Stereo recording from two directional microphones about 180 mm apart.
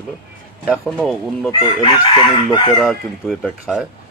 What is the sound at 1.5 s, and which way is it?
Chicken, 25° left (ahead or behind).